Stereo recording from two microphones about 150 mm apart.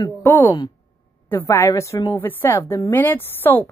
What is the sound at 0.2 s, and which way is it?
A woman's voice, 15° left (ahead or behind).